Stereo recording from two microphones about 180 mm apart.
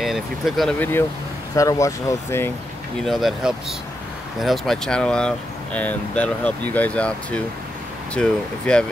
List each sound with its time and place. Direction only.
0.0 s speech: centre (ahead or behind)
1.5 s speech: 20° left (ahead or behind)
3.1 s speech: centre (ahead or behind)